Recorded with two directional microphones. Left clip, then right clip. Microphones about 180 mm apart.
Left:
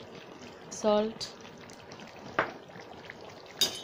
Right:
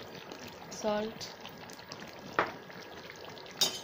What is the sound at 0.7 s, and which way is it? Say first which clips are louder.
Speech: left 6 dB; 45° left (ahead or behind).